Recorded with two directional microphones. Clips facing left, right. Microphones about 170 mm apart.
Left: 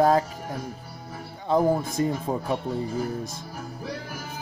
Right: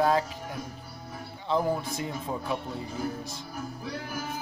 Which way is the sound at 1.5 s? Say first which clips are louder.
Left 5 dB; 45° left (ahead or behind).